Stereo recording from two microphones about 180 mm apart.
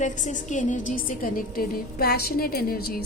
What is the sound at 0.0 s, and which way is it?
A woman's voice, 45° left (ahead or behind).